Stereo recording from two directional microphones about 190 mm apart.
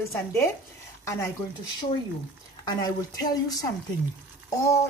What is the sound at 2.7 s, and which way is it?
Speech, 20° left (ahead or behind).